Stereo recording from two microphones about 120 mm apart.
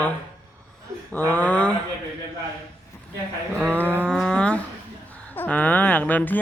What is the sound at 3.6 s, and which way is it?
Cattle, 15° right (ahead or behind).